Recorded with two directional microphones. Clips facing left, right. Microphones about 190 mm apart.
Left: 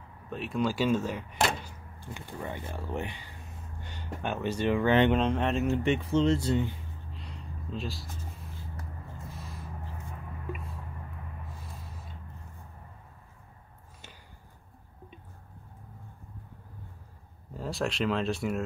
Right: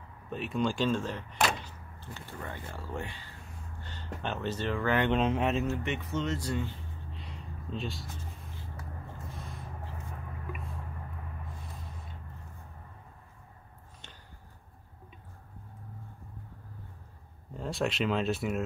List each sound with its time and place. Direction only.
0.3 s speech: centre (ahead or behind); by 5.1 s 20° left (ahead or behind)
5.1 s speech: centre (ahead or behind)
5.9 s speech: 30° left (ahead or behind)
7.1 s a sound: centre (ahead or behind)
17.6 s speech: centre (ahead or behind)